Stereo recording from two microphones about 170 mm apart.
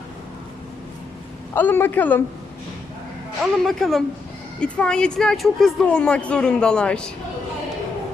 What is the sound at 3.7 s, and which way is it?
A woman's voice, centre (ahead or behind).